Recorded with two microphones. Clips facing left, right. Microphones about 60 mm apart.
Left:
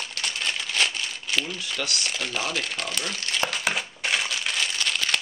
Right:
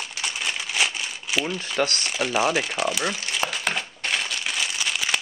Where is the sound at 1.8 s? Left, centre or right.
Right.